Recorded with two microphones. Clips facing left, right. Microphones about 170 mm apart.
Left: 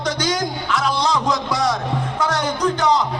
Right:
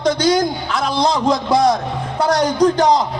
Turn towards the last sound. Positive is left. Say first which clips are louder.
# right 5 dB
turn(degrees=-35)  # may be behind; listen again after turning